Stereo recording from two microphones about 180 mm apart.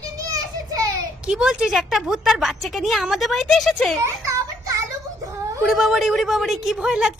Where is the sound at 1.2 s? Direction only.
5° right (ahead or behind).